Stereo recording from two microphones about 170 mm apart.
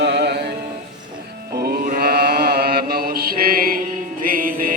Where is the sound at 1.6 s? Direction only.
60° right (ahead or behind).